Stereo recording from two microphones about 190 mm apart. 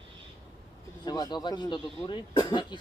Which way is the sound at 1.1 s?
20° left (ahead or behind).